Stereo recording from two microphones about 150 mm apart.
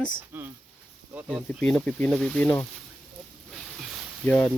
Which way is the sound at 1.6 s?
5° left (ahead or behind).